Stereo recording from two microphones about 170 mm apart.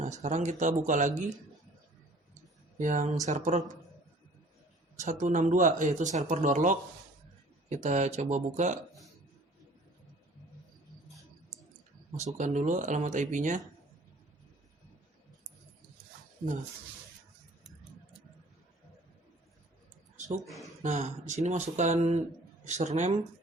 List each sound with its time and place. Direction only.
0.0 s speech: 45° right (ahead or behind)
2.7 s speech: 50° right (ahead or behind)
5.0 s speech: 45° right (ahead or behind)
12.1 s speech: 45° right (ahead or behind)
20.1 s a sound: 45° right (ahead or behind)
20.8 s speech: 45° right (ahead or behind)